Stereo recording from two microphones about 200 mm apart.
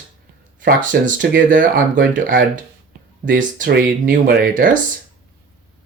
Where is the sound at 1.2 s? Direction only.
60° right (ahead or behind).